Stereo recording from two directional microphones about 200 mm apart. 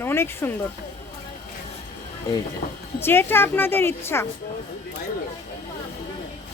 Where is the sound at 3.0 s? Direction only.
10° left (ahead or behind).